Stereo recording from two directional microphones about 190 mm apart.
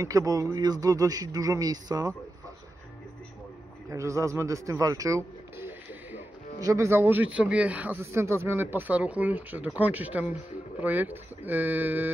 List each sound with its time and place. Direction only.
0.0 s speech: 20° right (ahead or behind)
3.9 s speech: 15° right (ahead or behind)